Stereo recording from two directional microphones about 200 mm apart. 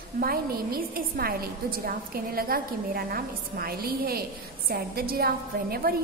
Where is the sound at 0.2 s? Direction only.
50° right (ahead or behind).